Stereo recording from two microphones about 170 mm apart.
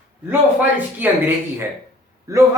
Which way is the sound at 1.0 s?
15° right (ahead or behind).